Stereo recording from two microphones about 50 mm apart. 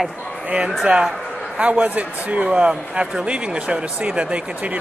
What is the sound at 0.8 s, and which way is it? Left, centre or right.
Speech, centre.